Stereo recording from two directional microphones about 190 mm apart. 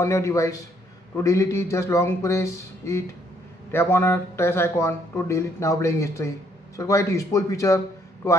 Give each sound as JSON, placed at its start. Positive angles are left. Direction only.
{"t": 0.0, "sound": "speech", "side_deg": 15}